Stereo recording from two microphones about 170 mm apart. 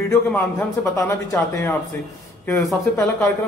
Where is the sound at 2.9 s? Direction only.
15° left (ahead or behind).